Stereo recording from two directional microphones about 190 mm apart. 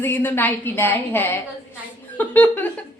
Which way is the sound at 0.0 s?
10° left (ahead or behind).